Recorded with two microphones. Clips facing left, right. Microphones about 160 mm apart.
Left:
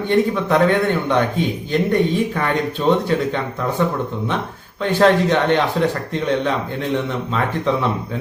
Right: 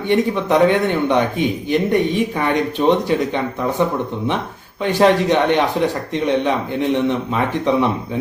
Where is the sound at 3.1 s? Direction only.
15° right (ahead or behind).